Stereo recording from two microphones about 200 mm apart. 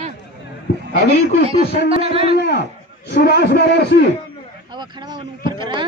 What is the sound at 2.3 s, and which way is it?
A man's voice, 55° left (ahead or behind).